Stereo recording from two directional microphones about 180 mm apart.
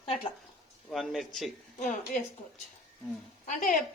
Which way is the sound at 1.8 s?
50° left (ahead or behind).